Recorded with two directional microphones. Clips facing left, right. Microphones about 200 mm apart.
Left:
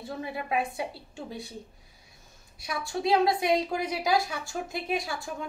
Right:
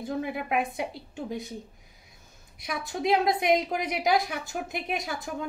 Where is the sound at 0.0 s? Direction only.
20° right (ahead or behind).